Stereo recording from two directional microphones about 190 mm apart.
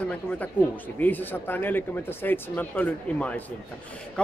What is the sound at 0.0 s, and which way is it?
Speech, 5° left (ahead or behind).